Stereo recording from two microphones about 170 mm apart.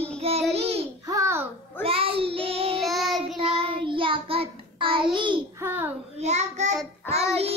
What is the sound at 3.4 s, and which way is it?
Child singing, 35° right (ahead or behind).